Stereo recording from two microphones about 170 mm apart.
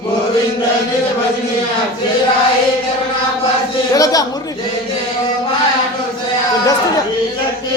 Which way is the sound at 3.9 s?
20° left (ahead or behind).